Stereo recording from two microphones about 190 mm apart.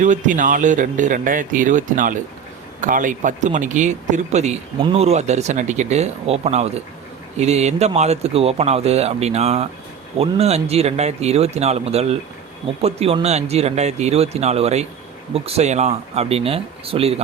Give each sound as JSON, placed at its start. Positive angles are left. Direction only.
{"t": 0.0, "sound": "speech", "side_deg": -40}